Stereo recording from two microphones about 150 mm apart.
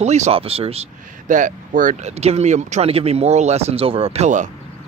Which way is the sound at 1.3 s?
60° right (ahead or behind).